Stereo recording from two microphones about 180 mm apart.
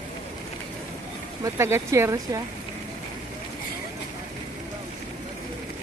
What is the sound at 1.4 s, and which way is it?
Speech, 15° right (ahead or behind).